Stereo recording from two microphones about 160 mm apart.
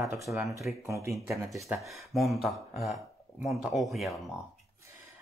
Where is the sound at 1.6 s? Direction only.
Centre (ahead or behind).